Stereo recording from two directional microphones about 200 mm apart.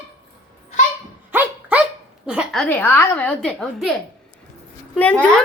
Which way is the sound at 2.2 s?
5° right (ahead or behind).